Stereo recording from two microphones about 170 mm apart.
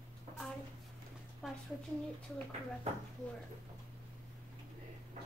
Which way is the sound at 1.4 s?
Centre (ahead or behind).